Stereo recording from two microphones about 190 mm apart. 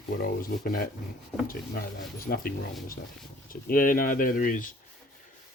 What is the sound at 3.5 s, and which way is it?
Speech, 45° left (ahead or behind).